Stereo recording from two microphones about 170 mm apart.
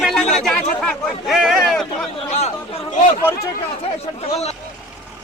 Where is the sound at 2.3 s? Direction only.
40° left (ahead or behind).